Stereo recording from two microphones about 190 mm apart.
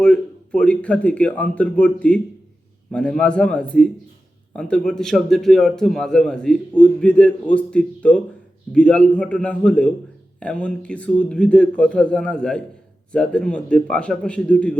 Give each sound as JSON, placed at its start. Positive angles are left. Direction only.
{"t": 0.0, "sound": "a man's voice", "side_deg": 5}